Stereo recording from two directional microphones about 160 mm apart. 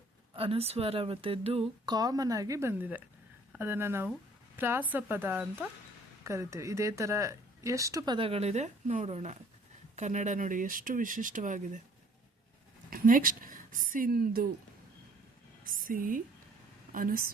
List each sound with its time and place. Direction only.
0.3 s speech: 40° right (ahead or behind)
12.9 s speech: 60° right (ahead or behind)
15.6 s a woman's voice: 55° right (ahead or behind)